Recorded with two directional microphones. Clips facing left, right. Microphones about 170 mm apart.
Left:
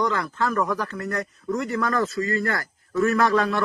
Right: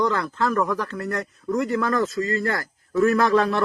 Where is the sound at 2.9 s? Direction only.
30° right (ahead or behind).